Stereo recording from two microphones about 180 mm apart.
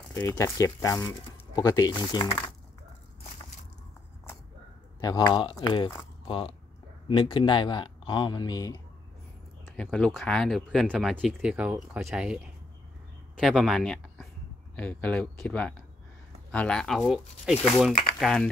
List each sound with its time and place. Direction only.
0.1 s speech: 15° left (ahead or behind)
5.0 s speech: 20° left (ahead or behind)
9.7 s speech: 5° left (ahead or behind)